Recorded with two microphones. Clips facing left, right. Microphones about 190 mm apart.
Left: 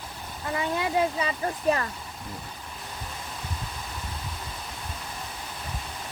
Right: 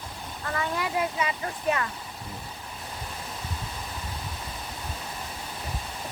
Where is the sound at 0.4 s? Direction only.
20° left (ahead or behind).